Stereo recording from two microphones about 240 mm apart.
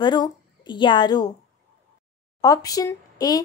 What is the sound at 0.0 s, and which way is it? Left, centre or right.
A woman's voice, centre.